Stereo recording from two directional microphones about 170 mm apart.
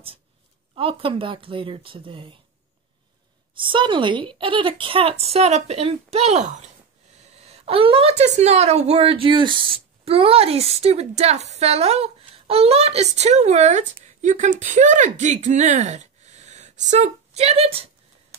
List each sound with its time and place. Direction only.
0.7 s a woman's voice: 30° right (ahead or behind)
3.5 s a woman's voice: 30° right (ahead or behind); by 6.7 s 45° right (ahead or behind)
7.4 s a woman's voice: 35° right (ahead or behind)